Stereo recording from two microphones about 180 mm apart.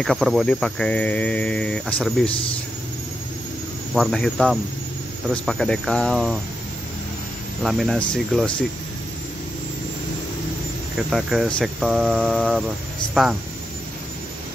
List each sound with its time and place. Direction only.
0.0 s speech: centre (ahead or behind)
3.9 s speech: centre (ahead or behind)
7.6 s speech: centre (ahead or behind)
11.0 s speech: centre (ahead or behind)